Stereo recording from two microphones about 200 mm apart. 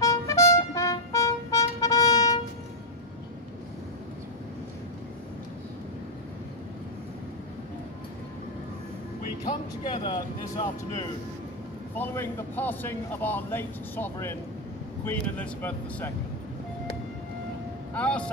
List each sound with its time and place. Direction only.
0.0 s music: 15° left (ahead or behind)
9.5 s speech: 20° left (ahead or behind)
11.9 s a man's voice: 10° left (ahead or behind)
17.9 s speech: 5° left (ahead or behind)